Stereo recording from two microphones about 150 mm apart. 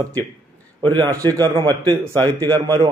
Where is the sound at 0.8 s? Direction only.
30° right (ahead or behind).